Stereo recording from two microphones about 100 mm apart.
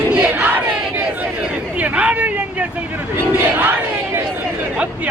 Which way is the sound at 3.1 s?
20° right (ahead or behind).